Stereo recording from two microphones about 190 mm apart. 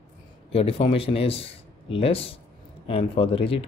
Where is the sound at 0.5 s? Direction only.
30° left (ahead or behind).